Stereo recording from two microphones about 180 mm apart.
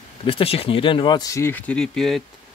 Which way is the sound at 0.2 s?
30° left (ahead or behind).